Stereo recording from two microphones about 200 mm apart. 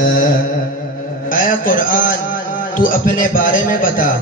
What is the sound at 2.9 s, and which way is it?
A man's voice, 45° left (ahead or behind).